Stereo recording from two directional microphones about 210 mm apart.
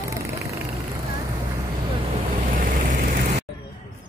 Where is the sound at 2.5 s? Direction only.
40° right (ahead or behind).